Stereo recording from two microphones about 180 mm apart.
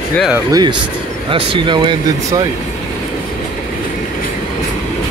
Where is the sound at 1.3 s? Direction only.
30° right (ahead or behind).